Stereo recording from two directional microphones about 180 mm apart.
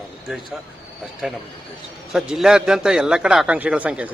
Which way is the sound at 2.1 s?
5° right (ahead or behind).